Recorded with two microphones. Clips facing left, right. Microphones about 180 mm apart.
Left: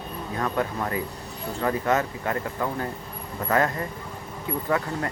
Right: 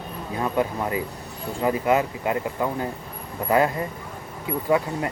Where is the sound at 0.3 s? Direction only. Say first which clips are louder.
Right 3 dB; 15° right (ahead or behind).